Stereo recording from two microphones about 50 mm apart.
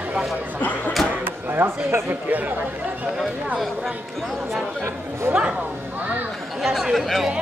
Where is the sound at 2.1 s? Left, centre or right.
Right.